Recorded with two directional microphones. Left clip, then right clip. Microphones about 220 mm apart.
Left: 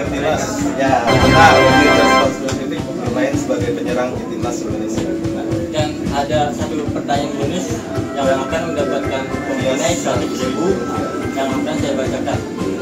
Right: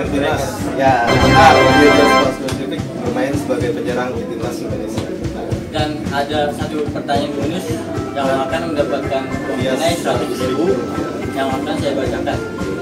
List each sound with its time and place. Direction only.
1.0 s music: centre (ahead or behind)